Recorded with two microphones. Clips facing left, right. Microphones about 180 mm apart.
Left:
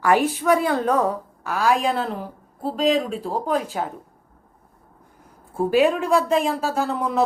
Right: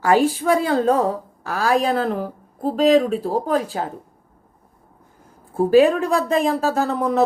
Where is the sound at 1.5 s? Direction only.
40° right (ahead or behind).